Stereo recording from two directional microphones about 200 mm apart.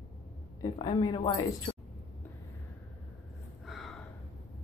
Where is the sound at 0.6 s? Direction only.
25° left (ahead or behind).